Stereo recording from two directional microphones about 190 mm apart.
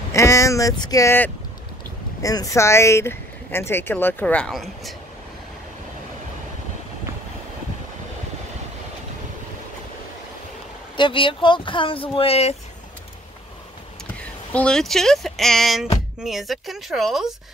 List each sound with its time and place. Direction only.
0.1 s speech: 15° left (ahead or behind)
11.0 s speech: 25° left (ahead or behind)
14.5 s speech: 5° left (ahead or behind)